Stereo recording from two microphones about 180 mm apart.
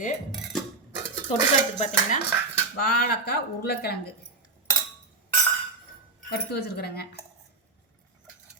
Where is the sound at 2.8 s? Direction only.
60° left (ahead or behind).